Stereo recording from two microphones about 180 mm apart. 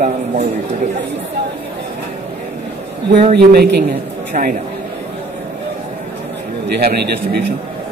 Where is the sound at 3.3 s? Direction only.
65° right (ahead or behind).